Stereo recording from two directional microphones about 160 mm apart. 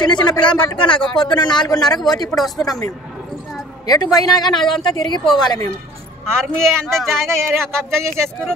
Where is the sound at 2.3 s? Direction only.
Centre (ahead or behind).